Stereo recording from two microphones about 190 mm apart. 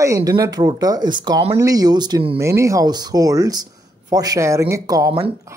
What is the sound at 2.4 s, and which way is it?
Speech, 15° right (ahead or behind).